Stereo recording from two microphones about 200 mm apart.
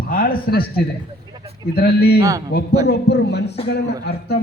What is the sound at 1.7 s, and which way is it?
A man's voice, 50° left (ahead or behind).